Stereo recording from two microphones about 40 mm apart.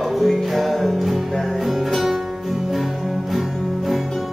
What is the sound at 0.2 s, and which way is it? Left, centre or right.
Music, centre.